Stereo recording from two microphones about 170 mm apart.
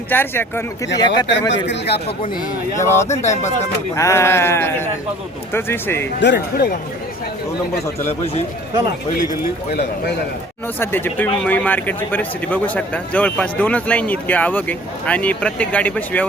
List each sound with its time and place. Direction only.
0.1 s a man's voice: 10° left (ahead or behind)
0.9 s speech: 25° left (ahead or behind)
1.3 s speech: 90° left
2.8 s a man's voice: 15° left (ahead or behind)
3.1 s speech: 45° left (ahead or behind)
3.9 s a man's voice: 15° left (ahead or behind)
6.1 s speech: 90° left
8.2 s speech: 35° left (ahead or behind)
10.8 s a man's voice: 10° left (ahead or behind)